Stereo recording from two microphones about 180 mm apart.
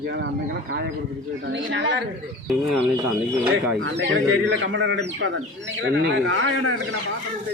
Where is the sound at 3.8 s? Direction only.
75° right (ahead or behind).